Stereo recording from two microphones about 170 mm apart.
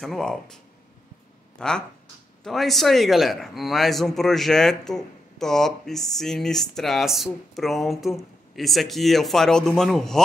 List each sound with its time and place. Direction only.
0.0 s a man's voice: 5° left (ahead or behind)
1.6 s a man's voice: 5° left (ahead or behind)